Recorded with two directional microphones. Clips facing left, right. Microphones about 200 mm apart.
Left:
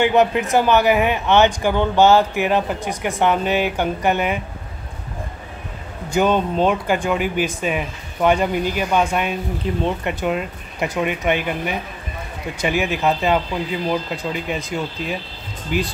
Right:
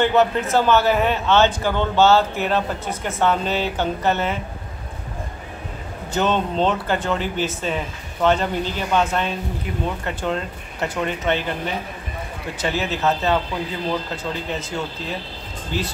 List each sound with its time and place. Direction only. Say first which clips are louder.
0.0 s a man's voice: left 2 dB; 15° left (ahead or behind)
6.1 s a man's voice: left 3 dB; 10° left (ahead or behind)
9.7 s speech: left 7 dB; 30° left (ahead or behind)
10.0 s a man's voice: left 3 dB; 15° left (ahead or behind)